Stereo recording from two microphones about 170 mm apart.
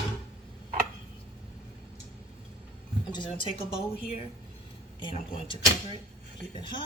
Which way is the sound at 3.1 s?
30° left (ahead or behind).